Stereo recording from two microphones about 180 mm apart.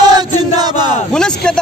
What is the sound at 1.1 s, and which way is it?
Speech, 5° left (ahead or behind).